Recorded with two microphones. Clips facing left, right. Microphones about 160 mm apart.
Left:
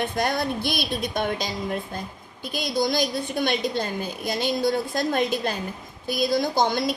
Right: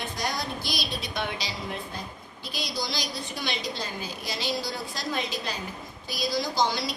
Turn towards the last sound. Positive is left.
turn(degrees=50)  # may be behind; listen again after turning